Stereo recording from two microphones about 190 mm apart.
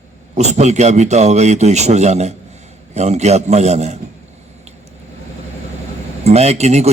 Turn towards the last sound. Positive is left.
turn(degrees=-35)  # may be behind; listen again after turning